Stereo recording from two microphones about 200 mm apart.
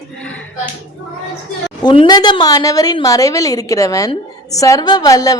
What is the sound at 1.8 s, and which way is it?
A woman's voice, 20° left (ahead or behind).